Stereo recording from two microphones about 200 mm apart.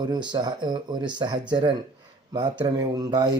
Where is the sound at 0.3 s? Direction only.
20° right (ahead or behind).